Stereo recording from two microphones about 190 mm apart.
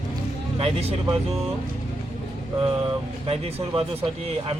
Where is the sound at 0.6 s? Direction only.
30° right (ahead or behind).